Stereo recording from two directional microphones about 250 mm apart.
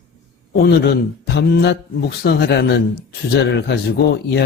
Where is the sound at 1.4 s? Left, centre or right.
Left.